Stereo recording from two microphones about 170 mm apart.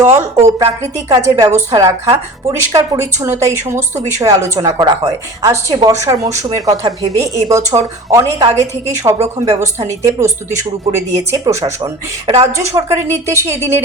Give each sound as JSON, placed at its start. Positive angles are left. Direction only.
{"t": 0.0, "sound": "a woman's voice", "side_deg": -15}